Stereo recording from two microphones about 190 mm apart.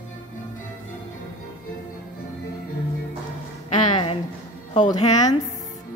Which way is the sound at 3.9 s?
30° left (ahead or behind).